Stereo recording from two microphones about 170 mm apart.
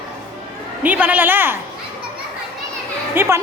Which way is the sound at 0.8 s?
10° right (ahead or behind).